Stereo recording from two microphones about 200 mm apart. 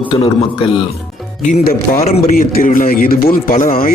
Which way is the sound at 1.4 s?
40° left (ahead or behind).